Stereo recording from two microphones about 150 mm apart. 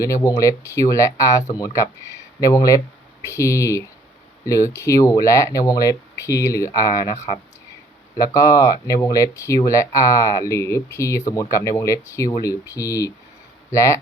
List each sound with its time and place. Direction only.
0.0 s speech: 20° left (ahead or behind)